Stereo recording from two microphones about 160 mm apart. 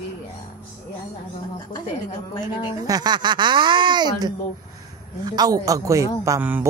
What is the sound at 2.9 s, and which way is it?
Speech, 25° right (ahead or behind).